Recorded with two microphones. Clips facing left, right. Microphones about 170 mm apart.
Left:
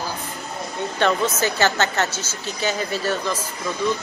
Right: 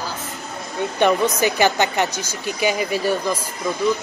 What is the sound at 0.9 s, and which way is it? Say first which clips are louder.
Speech: right 3 dB; 15° right (ahead or behind).